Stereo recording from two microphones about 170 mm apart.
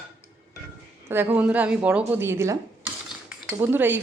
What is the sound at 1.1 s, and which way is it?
Cutlery, 10° right (ahead or behind).